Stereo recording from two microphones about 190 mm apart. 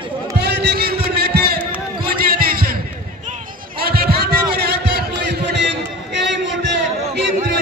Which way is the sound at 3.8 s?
55° right (ahead or behind).